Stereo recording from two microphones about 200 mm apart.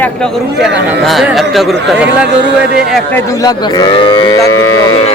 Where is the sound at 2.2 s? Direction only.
60° right (ahead or behind).